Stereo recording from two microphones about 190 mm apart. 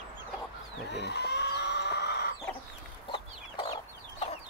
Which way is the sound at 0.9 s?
65° left (ahead or behind).